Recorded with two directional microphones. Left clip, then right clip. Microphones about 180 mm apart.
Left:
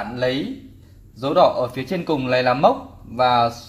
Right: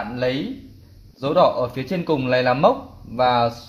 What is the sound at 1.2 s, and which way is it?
A man's voice, 30° right (ahead or behind).